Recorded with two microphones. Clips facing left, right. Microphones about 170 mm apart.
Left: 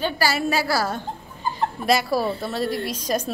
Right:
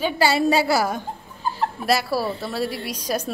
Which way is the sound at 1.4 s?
5° right (ahead or behind).